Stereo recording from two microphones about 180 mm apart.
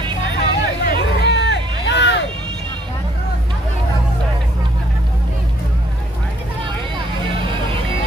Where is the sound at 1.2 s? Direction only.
70° left (ahead or behind).